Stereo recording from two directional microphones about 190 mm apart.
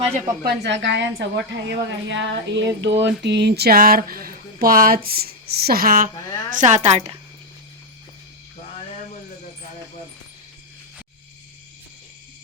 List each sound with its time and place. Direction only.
0.4 s a woman's voice: 65° right (ahead or behind); by 7.2 s 35° right (ahead or behind)